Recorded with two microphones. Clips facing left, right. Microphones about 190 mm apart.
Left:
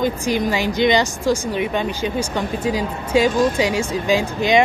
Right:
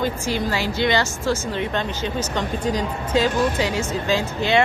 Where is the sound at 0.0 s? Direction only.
15° left (ahead or behind).